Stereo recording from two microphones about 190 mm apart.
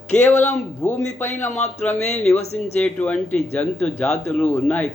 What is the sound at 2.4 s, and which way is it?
Speech, 35° left (ahead or behind).